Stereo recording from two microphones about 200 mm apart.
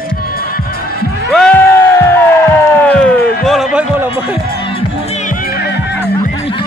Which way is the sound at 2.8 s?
10° left (ahead or behind).